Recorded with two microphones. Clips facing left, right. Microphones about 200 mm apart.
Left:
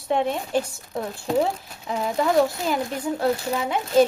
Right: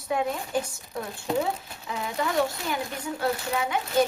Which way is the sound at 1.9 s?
35° left (ahead or behind).